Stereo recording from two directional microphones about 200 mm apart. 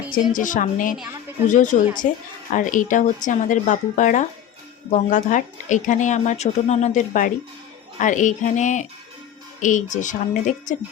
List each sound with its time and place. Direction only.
0.1 s a woman's voice: 40° left (ahead or behind)